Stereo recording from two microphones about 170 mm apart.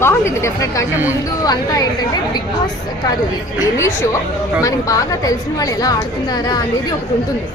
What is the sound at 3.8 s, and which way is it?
A woman's voice, 15° left (ahead or behind).